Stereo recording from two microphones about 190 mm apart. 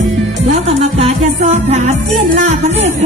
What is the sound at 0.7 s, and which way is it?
Music, 35° right (ahead or behind).